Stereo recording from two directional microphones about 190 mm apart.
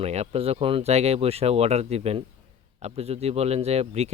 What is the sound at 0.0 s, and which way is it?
Speech, 35° right (ahead or behind).